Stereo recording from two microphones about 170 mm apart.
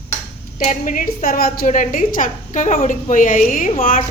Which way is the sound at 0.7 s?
55° left (ahead or behind).